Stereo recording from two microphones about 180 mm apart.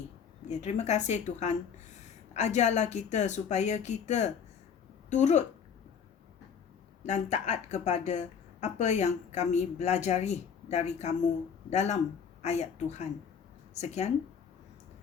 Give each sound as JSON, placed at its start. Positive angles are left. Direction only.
{"t": 0.4, "sound": "a woman's voice", "side_deg": 40}
{"t": 7.0, "sound": "a woman's voice", "side_deg": 40}